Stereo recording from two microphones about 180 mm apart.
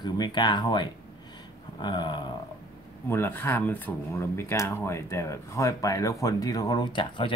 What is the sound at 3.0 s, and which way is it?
Speech, 15° left (ahead or behind).